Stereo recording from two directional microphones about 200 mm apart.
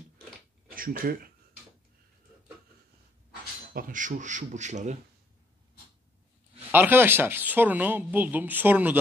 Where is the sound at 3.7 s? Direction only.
45° right (ahead or behind).